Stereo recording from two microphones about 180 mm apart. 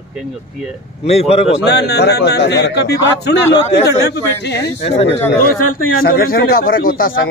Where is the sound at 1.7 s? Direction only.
65° left (ahead or behind).